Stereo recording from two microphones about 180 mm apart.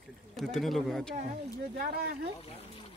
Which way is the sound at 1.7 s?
55° right (ahead or behind).